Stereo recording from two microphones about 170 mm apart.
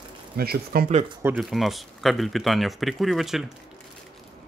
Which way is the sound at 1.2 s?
5° right (ahead or behind).